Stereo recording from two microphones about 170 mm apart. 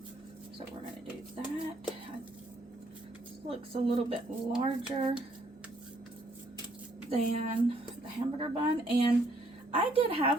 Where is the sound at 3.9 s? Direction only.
30° right (ahead or behind).